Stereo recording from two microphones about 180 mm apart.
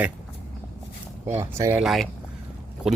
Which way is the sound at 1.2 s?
15° right (ahead or behind).